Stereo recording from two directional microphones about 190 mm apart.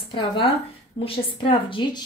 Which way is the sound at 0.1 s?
25° left (ahead or behind).